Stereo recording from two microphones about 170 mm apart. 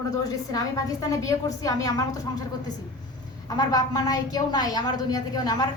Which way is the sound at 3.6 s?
20° left (ahead or behind).